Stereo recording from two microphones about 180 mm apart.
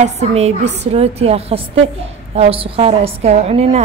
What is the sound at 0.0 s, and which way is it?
A woman's voice, 35° right (ahead or behind).